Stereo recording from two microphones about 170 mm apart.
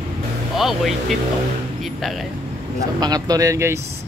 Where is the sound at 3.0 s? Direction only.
20° right (ahead or behind).